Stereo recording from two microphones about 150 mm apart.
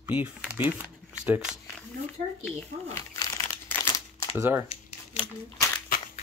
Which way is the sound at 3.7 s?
15° left (ahead or behind).